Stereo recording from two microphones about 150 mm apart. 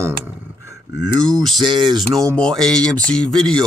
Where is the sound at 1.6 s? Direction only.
30° right (ahead or behind).